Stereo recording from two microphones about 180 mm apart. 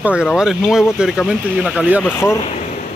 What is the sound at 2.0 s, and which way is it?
Speech, 15° left (ahead or behind).